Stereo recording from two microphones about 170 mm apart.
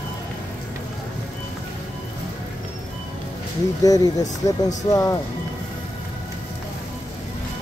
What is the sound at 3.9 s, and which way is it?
Speech, 20° left (ahead or behind).